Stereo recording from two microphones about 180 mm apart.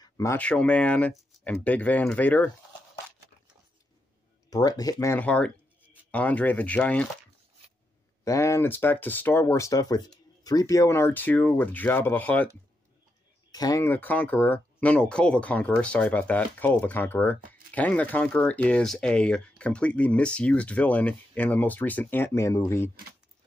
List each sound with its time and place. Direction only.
0.2 s speech: 10° left (ahead or behind)
4.5 s speech: 20° left (ahead or behind)
8.2 s speech: 15° left (ahead or behind)
13.5 s speech: 20° left (ahead or behind)